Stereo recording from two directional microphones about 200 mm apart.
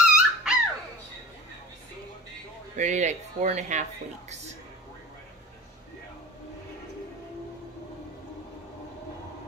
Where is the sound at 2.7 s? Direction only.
35° right (ahead or behind).